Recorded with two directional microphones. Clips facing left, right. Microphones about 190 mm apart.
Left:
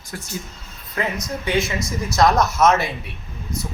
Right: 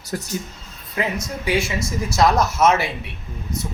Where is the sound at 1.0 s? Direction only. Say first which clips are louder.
Right 1 dB; 10° right (ahead or behind).